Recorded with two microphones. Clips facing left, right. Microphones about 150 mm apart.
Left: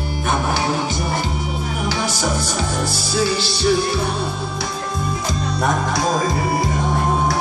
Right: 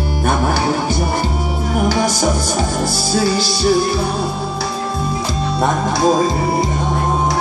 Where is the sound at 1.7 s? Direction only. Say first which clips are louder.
Right 8 dB; 45° right (ahead or behind).